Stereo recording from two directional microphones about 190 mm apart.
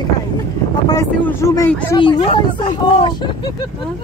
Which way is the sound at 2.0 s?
25° left (ahead or behind).